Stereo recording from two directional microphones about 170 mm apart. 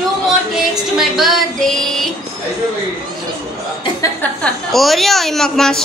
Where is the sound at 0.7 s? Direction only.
Centre (ahead or behind).